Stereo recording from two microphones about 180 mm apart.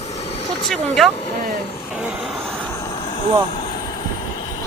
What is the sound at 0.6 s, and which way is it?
Speech, centre (ahead or behind).